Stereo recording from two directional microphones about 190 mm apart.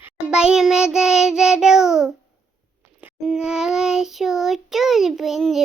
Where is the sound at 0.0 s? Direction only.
5° right (ahead or behind).